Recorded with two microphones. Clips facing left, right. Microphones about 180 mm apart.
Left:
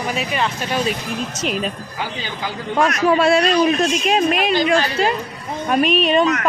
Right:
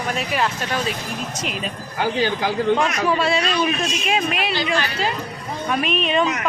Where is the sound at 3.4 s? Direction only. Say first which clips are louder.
Left 6 dB; 40° left (ahead or behind).